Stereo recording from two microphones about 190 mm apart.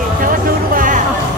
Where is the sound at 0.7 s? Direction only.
45° right (ahead or behind).